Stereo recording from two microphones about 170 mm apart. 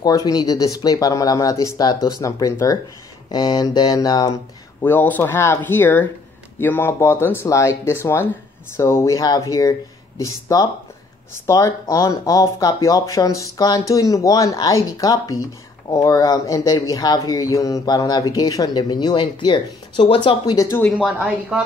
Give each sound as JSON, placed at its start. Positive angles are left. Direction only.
{"t": 0.0, "sound": "speech", "side_deg": 20}
{"t": 4.8, "sound": "speech", "side_deg": 10}
{"t": 21.0, "sound": "speech", "side_deg": -5}